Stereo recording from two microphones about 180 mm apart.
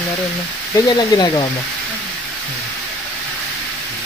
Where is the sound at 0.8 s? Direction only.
25° left (ahead or behind).